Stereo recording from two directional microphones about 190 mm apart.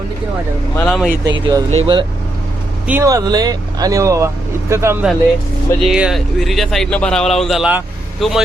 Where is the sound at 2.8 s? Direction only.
10° right (ahead or behind).